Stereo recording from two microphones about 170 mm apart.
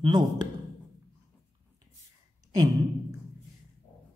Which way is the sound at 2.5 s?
20° right (ahead or behind).